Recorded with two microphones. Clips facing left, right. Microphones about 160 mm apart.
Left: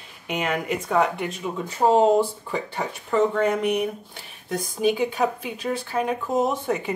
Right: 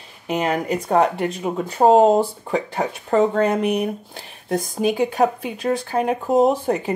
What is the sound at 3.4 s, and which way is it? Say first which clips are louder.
Speech: right 2 dB; 35° right (ahead or behind).